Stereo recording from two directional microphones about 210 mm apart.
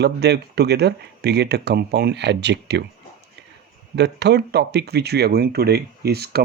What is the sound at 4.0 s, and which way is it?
Speech, 55° right (ahead or behind).